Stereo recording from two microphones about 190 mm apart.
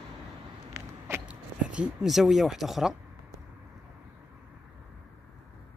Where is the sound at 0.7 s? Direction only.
15° right (ahead or behind).